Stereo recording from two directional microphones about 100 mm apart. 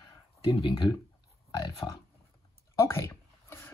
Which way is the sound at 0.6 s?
50° left (ahead or behind).